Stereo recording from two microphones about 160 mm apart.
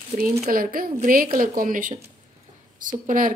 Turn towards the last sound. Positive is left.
turn(degrees=-55)  # may be behind; listen again after turning